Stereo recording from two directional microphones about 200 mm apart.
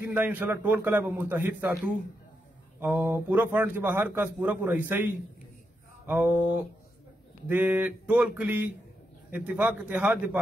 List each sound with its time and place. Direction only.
0.0 s a man's voice: 10° right (ahead or behind)
2.8 s a man's voice: 10° right (ahead or behind)